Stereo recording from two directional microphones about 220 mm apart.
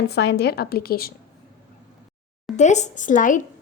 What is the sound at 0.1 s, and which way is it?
A woman's voice, 50° left (ahead or behind).